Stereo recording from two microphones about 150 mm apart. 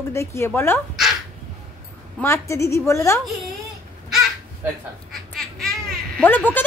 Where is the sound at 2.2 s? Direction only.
20° left (ahead or behind).